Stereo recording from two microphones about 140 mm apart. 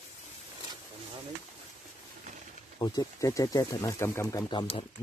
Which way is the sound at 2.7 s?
30° left (ahead or behind).